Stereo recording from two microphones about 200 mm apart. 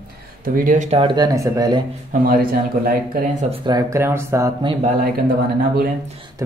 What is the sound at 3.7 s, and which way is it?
Speech, 15° right (ahead or behind).